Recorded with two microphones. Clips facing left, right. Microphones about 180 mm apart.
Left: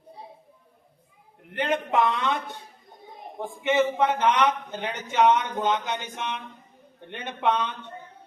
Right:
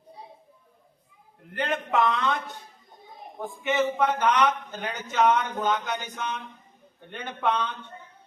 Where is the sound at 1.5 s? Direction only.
20° left (ahead or behind).